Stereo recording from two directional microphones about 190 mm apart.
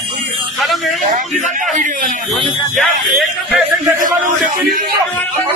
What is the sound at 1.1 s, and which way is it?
Speech, 40° right (ahead or behind).